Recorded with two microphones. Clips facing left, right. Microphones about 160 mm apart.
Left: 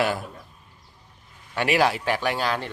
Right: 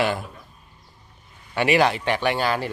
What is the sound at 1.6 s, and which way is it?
Speech, centre (ahead or behind).